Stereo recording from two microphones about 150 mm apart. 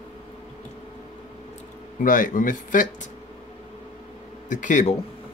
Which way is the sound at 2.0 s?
60° left (ahead or behind).